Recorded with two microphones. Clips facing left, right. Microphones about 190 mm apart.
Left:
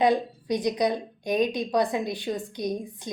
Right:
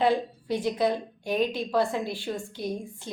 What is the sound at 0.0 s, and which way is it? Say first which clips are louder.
A woman's voice: left 2 dB; 15° left (ahead or behind).